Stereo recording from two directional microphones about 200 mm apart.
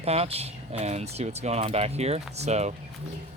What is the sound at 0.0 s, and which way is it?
Speech, 30° right (ahead or behind).